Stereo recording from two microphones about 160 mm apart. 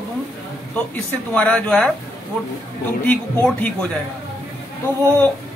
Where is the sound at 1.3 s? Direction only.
10° left (ahead or behind).